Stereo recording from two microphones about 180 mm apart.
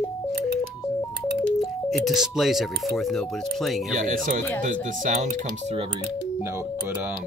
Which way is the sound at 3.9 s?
50° right (ahead or behind).